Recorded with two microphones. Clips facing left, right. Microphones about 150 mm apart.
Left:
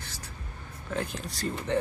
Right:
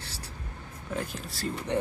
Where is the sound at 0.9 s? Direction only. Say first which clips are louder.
Left 2 dB; 5° right (ahead or behind).